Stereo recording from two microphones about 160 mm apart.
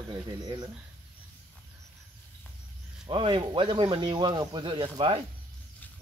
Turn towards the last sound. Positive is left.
turn(degrees=-30)  # may be behind; listen again after turning